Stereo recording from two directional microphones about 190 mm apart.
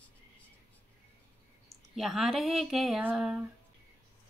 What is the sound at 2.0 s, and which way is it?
Speech, centre (ahead or behind).